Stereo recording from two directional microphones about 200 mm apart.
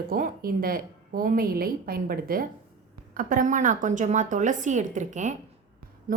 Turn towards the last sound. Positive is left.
turn(degrees=-40)  # may be behind; listen again after turning